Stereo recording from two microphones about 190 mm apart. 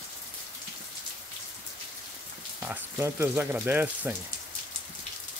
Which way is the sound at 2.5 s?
10° right (ahead or behind).